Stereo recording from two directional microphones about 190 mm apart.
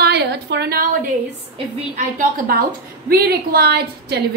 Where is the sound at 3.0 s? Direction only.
50° right (ahead or behind).